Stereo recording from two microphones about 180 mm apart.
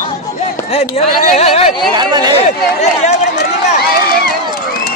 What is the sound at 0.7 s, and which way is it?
Speech, 35° left (ahead or behind).